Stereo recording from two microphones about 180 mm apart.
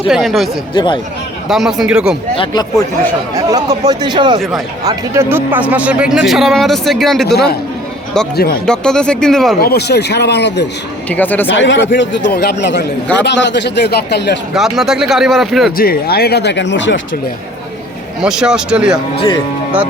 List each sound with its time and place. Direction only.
0.1 s speech: centre (ahead or behind)
0.7 s speech: 25° left (ahead or behind)
1.5 s speech: centre (ahead or behind)
2.3 s speech: 25° left (ahead or behind)
3.3 s speech: 20° right (ahead or behind); by 7.3 s centre (ahead or behind)
7.3 s a man's voice: 65° left (ahead or behind)
8.6 s speech: 5° left (ahead or behind)
9.6 s speech: 60° left (ahead or behind)
11.1 s speech: 10° left (ahead or behind)
11.4 s speech: 90° left
12.3 s speech: 65° left (ahead or behind)
14.5 s speech: centre (ahead or behind)
15.8 s speech: 60° left (ahead or behind); by 17.0 s 90° left
18.2 s speech: 5° right (ahead or behind)